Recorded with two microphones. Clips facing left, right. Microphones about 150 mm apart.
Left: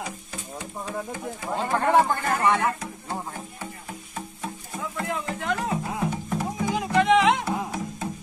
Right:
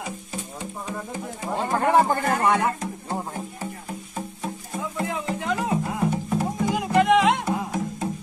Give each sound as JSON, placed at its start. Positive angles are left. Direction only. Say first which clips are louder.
{"t": 1.5, "sound": "speech", "louder": "right 1 dB", "side_deg": -5}
{"t": 2.0, "sound": "speech", "louder": "right 3 dB", "side_deg": -35}
{"t": 2.4, "sound": "speech", "louder": "right 1 dB", "side_deg": -15}
{"t": 4.7, "sound": "music", "louder": "right 2 dB", "side_deg": -5}